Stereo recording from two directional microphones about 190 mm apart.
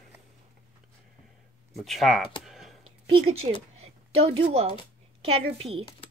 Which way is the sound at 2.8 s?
30° right (ahead or behind).